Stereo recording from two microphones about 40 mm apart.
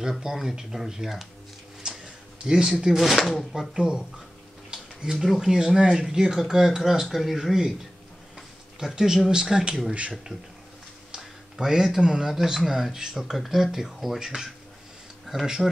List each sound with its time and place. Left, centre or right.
0.2 s speech: centre
1.8 s a sound: right
2.4 s speech: centre
3.0 s speech: centre
3.5 s speech: centre
8.4 s a sound: centre
9.3 s speech: centre
11.1 s a sound: centre
12.0 s speech: centre
13.1 s speech: centre